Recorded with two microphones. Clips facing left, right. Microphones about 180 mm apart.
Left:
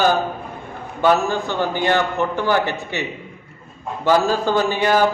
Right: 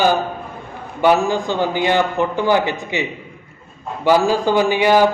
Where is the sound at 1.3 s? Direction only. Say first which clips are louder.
Right 3 dB; 15° right (ahead or behind).